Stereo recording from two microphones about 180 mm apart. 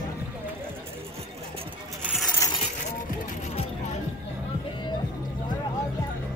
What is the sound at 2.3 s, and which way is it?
Vehicle, 20° left (ahead or behind).